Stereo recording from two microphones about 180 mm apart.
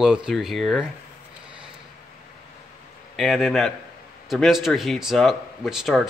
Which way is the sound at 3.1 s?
Centre (ahead or behind).